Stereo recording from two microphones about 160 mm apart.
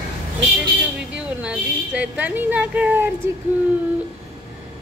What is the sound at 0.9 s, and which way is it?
A child's voice, 5° right (ahead or behind).